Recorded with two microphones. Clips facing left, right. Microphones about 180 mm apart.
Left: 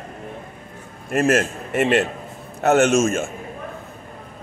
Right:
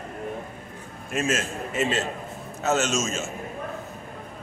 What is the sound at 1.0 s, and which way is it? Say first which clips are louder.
Chuckle: left 8 dB; 60° left (ahead or behind).